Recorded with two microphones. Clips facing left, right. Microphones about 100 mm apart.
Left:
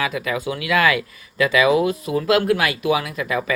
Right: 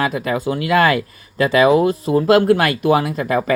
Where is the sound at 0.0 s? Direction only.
40° right (ahead or behind).